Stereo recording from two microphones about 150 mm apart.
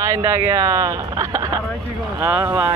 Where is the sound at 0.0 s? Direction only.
20° right (ahead or behind).